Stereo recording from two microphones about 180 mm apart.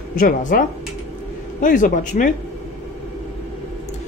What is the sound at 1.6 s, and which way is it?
Speech, 45° left (ahead or behind).